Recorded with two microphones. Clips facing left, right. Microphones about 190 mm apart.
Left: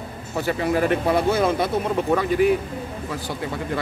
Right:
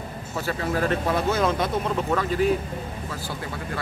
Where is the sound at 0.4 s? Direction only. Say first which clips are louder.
Left 4 dB; 15° left (ahead or behind).